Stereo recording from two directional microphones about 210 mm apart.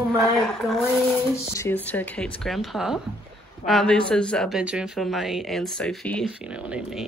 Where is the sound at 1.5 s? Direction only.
10° left (ahead or behind).